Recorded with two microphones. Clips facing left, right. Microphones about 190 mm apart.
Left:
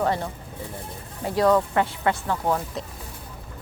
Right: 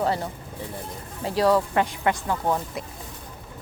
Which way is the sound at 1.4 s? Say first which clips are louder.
Left 1 dB; 10° right (ahead or behind).